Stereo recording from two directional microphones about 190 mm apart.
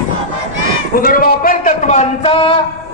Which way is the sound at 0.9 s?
50° left (ahead or behind).